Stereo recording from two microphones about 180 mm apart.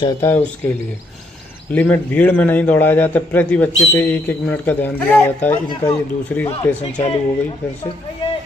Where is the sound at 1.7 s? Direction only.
10° left (ahead or behind).